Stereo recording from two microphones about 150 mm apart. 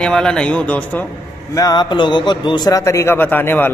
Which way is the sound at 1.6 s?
25° left (ahead or behind).